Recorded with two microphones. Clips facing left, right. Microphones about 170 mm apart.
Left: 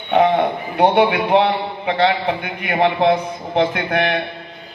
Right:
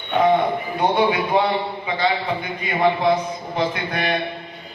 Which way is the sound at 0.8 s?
70° left (ahead or behind).